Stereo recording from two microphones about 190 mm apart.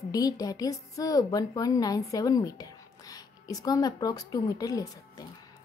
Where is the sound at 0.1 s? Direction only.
20° left (ahead or behind).